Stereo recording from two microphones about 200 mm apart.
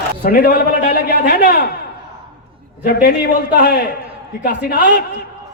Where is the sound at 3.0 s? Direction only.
50° left (ahead or behind).